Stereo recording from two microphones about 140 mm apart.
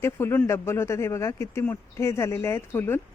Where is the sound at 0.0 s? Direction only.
15° left (ahead or behind).